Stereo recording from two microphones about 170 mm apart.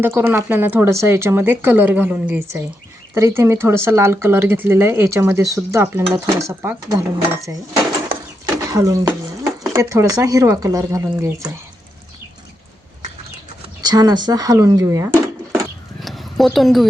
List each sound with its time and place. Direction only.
0.0 s speech: 15° right (ahead or behind)
8.6 s speech: 20° right (ahead or behind)
13.8 s speech: 25° right (ahead or behind)
15.5 s a sound: centre (ahead or behind)